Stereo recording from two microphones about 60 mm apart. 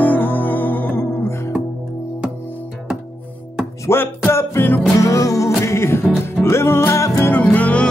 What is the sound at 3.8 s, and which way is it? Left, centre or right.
Music, left.